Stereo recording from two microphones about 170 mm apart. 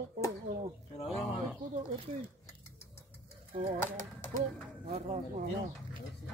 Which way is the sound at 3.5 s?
40° right (ahead or behind).